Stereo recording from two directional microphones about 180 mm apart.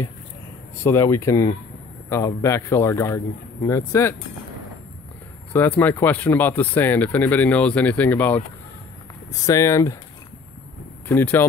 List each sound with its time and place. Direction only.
0.8 s speech: 15° left (ahead or behind)
5.5 s speech: 10° left (ahead or behind)
9.5 s speech: 15° left (ahead or behind)
11.1 s speech: 10° left (ahead or behind)